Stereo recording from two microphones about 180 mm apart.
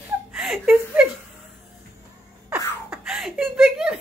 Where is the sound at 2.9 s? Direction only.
5° right (ahead or behind).